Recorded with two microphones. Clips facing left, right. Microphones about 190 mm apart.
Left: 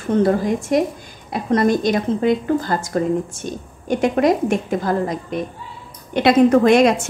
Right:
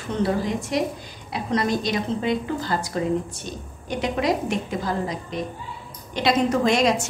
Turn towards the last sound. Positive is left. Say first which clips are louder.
# left 7 dB
turn(degrees=55)  # may be behind; listen again after turning